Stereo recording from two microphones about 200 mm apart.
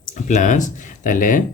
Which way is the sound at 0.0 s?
40° left (ahead or behind).